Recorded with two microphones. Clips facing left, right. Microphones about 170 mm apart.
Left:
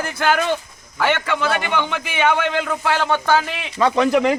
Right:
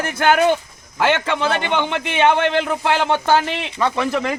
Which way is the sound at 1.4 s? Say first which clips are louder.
Right 1 dB; 25° right (ahead or behind).